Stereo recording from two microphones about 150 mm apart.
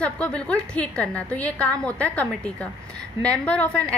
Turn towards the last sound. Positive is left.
turn(degrees=10)  # may be behind; listen again after turning